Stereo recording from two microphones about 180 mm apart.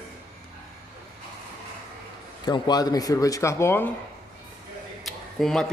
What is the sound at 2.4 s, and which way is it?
Speech, 25° left (ahead or behind).